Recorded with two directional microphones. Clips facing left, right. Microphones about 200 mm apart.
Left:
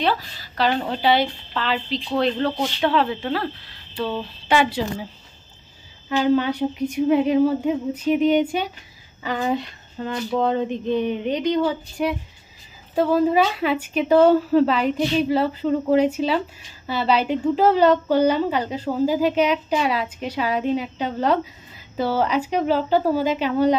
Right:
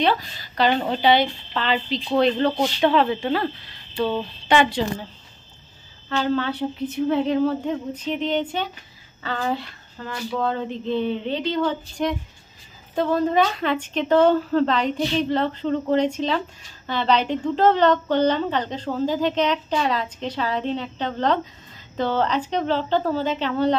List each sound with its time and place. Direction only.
0.0 s a woman's voice: 5° left (ahead or behind)
6.0 s a woman's voice: 15° left (ahead or behind)